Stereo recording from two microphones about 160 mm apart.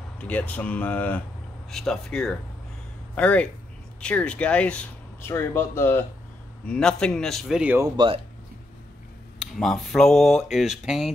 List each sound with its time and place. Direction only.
0.2 s speech: 10° left (ahead or behind)
7.7 s speech: 25° right (ahead or behind)
9.4 s speech: centre (ahead or behind)